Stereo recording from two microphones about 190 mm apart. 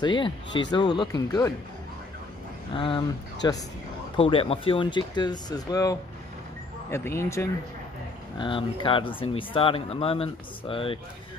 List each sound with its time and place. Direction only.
0.0 s speech: 25° left (ahead or behind)
2.7 s speech: 25° left (ahead or behind)
8.4 s speech: 25° left (ahead or behind)